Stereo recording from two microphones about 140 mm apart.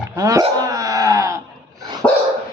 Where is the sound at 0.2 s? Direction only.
25° right (ahead or behind).